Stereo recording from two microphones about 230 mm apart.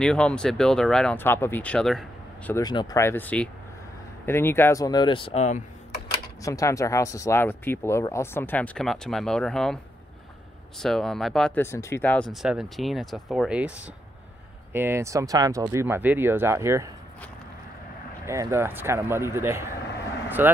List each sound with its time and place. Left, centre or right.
0.0 s speech: centre
2.5 s speech: centre
6.4 s speech: centre
10.8 s speech: centre
18.2 s speech: centre